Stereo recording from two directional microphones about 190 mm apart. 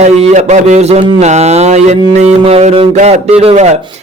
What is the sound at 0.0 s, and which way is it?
A man's voice, 35° right (ahead or behind).